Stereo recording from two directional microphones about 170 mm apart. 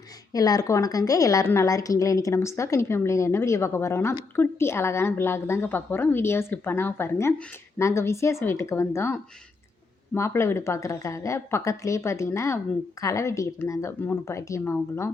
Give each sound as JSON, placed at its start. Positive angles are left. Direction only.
{"t": 0.3, "sound": "a woman's voice", "side_deg": 20}
{"t": 10.2, "sound": "a woman's voice", "side_deg": 15}